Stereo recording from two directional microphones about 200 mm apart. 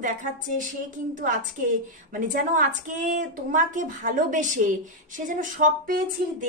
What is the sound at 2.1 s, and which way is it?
A woman's voice, 45° right (ahead or behind).